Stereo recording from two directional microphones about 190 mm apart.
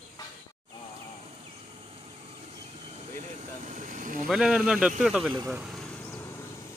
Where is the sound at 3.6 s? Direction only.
40° right (ahead or behind).